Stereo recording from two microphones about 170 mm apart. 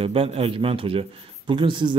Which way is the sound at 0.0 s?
35° right (ahead or behind).